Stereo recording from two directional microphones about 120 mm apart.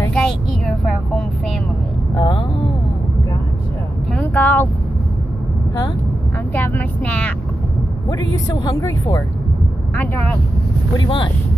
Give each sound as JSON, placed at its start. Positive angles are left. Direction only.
{"t": 0.1, "sound": "vehicle", "side_deg": 5}
{"t": 2.1, "sound": "a sound", "side_deg": 35}
{"t": 4.2, "sound": "a sound", "side_deg": 15}
{"t": 6.5, "sound": "vehicle", "side_deg": 15}
{"t": 8.6, "sound": "speech", "side_deg": 30}
{"t": 11.0, "sound": "speech", "side_deg": 40}